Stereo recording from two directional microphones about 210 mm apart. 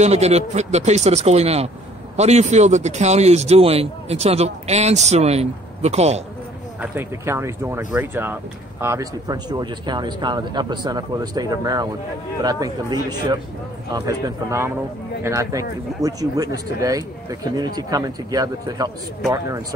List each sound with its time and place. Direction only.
0.0 s a man's voice: 30° right (ahead or behind)
6.8 s a man's voice: 10° right (ahead or behind)